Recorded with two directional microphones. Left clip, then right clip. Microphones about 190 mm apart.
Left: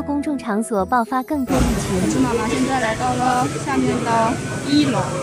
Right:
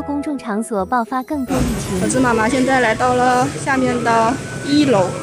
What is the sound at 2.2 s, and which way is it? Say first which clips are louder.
Speech: right 5 dB; 45° right (ahead or behind).